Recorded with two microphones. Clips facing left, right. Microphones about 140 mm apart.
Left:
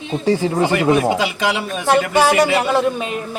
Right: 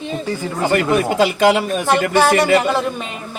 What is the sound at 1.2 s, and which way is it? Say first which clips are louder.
Speech: right 6 dB; 50° right (ahead or behind).